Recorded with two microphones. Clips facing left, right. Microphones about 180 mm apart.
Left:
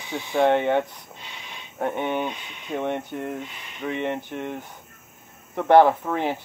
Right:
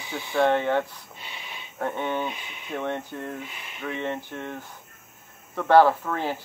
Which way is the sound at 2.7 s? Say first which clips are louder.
Left 3 dB; 15° left (ahead or behind).